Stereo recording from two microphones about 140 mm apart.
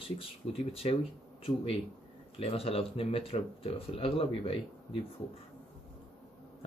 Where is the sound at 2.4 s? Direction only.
45° left (ahead or behind).